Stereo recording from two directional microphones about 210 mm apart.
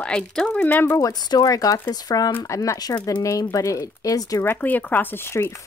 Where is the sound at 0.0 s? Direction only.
5° left (ahead or behind).